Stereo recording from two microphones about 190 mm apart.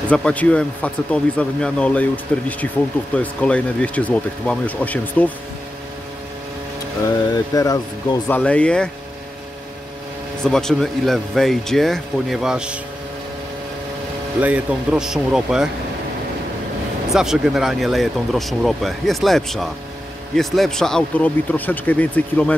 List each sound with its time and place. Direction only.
0.1 s speech: 5° left (ahead or behind)
7.1 s mantra: 20° left (ahead or behind)
8.4 s speech: 5° left (ahead or behind)
10.4 s speech: 5° left (ahead or behind)
14.4 s speech: 5° right (ahead or behind)
17.1 s speech: centre (ahead or behind)